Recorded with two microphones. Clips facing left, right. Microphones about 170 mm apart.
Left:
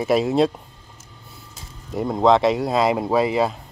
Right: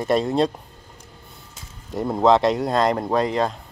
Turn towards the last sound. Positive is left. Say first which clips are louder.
# left 2 dB
turn(degrees=5)  # may be behind; listen again after turning